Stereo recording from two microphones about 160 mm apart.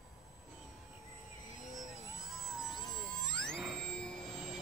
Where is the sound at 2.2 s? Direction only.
Centre (ahead or behind).